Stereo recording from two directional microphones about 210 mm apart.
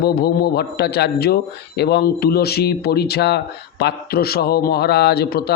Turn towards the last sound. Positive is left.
turn(degrees=50)  # may be behind; listen again after turning